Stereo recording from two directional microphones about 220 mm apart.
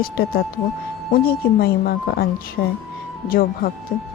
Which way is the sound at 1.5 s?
45° left (ahead or behind).